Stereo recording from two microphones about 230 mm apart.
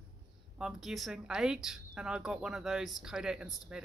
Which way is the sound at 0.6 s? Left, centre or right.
Centre.